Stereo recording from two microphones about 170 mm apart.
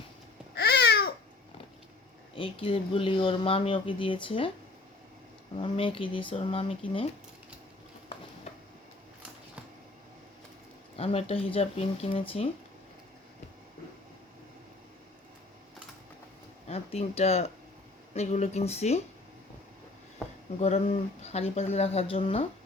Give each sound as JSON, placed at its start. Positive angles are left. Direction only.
{"t": 0.5, "sound": "babbling", "side_deg": 70}
{"t": 2.3, "sound": "speech", "side_deg": 30}
{"t": 5.5, "sound": "speech", "side_deg": 30}
{"t": 10.9, "sound": "speech", "side_deg": 35}
{"t": 16.6, "sound": "speech", "side_deg": 40}
{"t": 20.6, "sound": "speech", "side_deg": 35}